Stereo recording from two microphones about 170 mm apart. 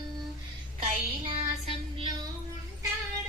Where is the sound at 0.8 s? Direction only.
40° right (ahead or behind).